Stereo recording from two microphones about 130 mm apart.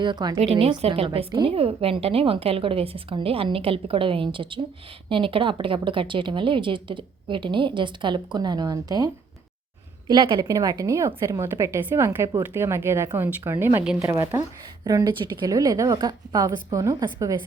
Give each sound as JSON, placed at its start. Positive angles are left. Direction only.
{"t": 0.0, "sound": "speech", "side_deg": -35}
{"t": 0.3, "sound": "a woman's voice", "side_deg": -50}
{"t": 10.1, "sound": "a woman's voice", "side_deg": -35}
{"t": 14.8, "sound": "a woman's voice", "side_deg": -30}